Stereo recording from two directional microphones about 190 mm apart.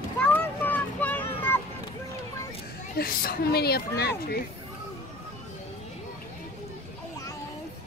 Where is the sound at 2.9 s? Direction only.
50° left (ahead or behind).